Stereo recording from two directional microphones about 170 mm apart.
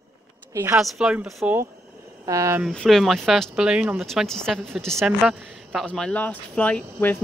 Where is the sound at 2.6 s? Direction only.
5° left (ahead or behind).